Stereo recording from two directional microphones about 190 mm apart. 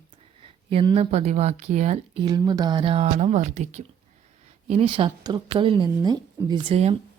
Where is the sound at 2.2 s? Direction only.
20° right (ahead or behind).